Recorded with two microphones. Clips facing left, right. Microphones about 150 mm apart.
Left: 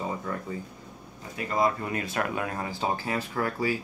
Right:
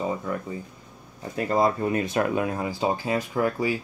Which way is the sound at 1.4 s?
35° right (ahead or behind).